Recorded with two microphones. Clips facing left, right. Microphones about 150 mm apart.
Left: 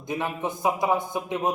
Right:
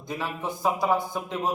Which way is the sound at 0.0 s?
20° left (ahead or behind).